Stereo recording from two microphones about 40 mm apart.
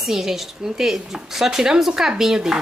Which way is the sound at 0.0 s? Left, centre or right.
Centre.